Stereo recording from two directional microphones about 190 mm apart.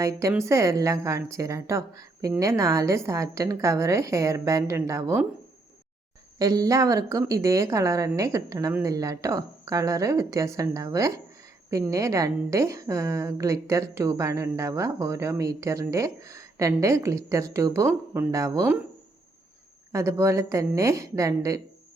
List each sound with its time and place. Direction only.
0.0 s a woman's voice: 15° right (ahead or behind)
6.4 s a woman's voice: 20° right (ahead or behind)
19.9 s a woman's voice: 15° right (ahead or behind)